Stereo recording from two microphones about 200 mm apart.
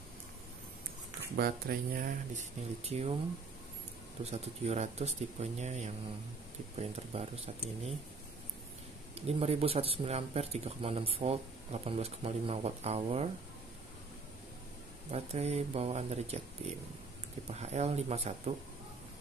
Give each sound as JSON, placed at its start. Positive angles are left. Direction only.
{"t": 1.3, "sound": "speech", "side_deg": -50}
{"t": 4.2, "sound": "speech", "side_deg": -30}
{"t": 9.4, "sound": "speech", "side_deg": -30}
{"t": 15.0, "sound": "speech", "side_deg": -30}